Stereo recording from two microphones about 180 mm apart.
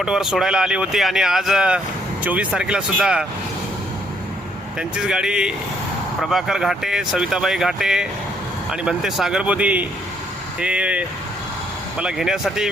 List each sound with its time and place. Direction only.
0.0 s speech: 5° right (ahead or behind)
4.8 s speech: 5° right (ahead or behind)